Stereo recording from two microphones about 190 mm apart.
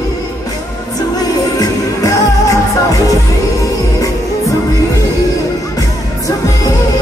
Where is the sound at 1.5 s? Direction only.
20° left (ahead or behind).